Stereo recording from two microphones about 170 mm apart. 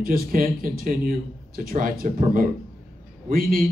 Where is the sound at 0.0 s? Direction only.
60° right (ahead or behind).